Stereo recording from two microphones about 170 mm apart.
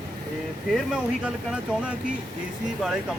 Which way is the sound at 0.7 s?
5° right (ahead or behind).